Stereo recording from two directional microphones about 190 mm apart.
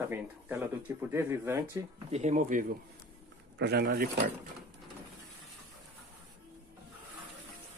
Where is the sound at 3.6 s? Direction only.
60° right (ahead or behind).